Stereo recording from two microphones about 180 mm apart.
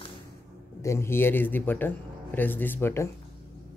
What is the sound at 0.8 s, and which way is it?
A man's voice, 15° left (ahead or behind).